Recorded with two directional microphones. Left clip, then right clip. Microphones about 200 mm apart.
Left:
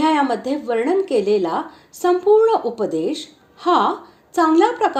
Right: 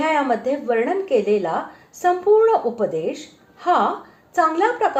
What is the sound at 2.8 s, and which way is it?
A woman's voice, 35° left (ahead or behind).